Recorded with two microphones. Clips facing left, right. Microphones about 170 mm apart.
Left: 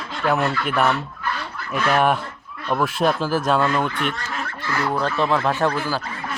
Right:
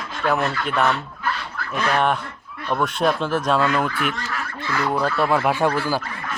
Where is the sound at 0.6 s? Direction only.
5° left (ahead or behind).